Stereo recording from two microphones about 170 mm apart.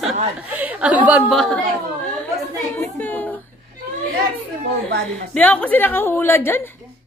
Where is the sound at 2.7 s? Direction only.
10° left (ahead or behind).